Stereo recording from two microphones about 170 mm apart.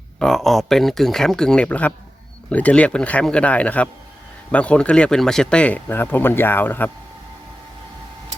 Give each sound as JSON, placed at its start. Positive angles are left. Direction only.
{"t": 0.2, "sound": "speech", "side_deg": 0}